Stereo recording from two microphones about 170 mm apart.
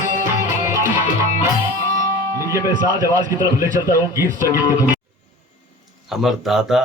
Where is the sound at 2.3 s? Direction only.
15° right (ahead or behind).